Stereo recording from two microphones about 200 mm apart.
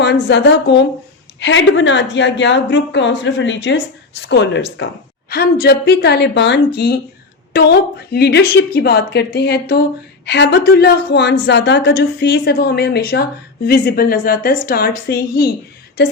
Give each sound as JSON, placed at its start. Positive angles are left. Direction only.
{"t": 0.0, "sound": "a woman's voice", "side_deg": 60}